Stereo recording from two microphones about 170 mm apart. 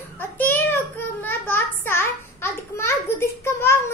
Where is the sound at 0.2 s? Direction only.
10° left (ahead or behind).